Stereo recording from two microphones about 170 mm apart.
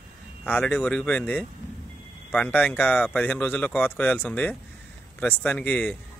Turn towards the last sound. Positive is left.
turn(degrees=10)  # may be behind; listen again after turning